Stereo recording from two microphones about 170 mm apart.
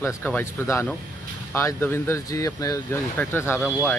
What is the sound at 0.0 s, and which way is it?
Speech, 15° left (ahead or behind).